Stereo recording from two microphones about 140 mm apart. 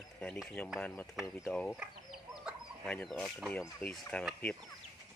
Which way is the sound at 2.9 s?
5° left (ahead or behind).